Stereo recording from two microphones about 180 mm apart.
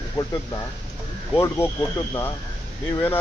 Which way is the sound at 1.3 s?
15° left (ahead or behind).